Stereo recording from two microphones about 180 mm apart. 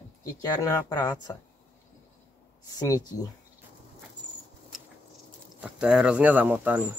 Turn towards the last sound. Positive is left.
turn(degrees=-10)  # may be behind; listen again after turning